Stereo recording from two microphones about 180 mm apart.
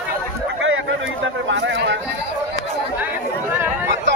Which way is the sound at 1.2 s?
80° right.